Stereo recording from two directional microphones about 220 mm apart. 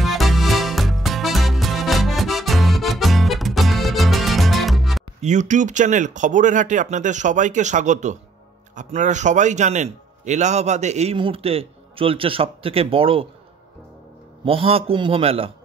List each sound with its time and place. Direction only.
0.0 s music: centre (ahead or behind)
5.2 s a man's voice: 35° right (ahead or behind)
14.4 s a man's voice: 25° right (ahead or behind)